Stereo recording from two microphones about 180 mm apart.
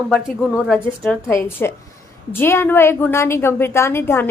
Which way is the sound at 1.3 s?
15° left (ahead or behind).